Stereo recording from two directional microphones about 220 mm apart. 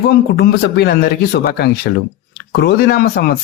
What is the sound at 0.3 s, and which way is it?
Speech, 45° left (ahead or behind).